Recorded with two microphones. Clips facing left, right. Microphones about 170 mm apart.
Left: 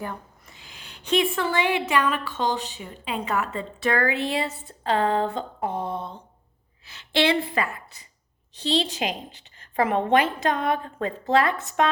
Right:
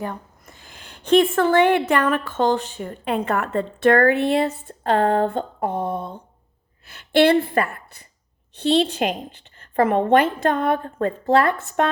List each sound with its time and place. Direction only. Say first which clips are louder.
0.4 s a woman's voice: right 3 dB; 50° right (ahead or behind)